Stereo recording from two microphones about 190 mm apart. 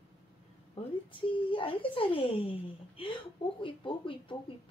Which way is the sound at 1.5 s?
25° left (ahead or behind).